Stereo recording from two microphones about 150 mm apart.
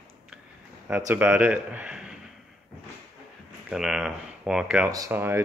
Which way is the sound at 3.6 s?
5° right (ahead or behind).